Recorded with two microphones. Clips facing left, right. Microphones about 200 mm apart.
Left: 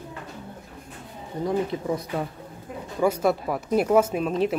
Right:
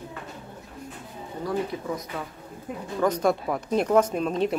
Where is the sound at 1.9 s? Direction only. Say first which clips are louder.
Left 5 dB; 30° left (ahead or behind).